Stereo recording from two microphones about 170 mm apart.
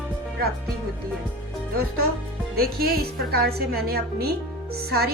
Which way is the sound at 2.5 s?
65° right (ahead or behind).